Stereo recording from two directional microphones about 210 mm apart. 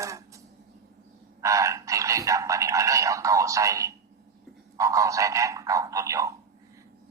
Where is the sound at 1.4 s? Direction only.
15° right (ahead or behind).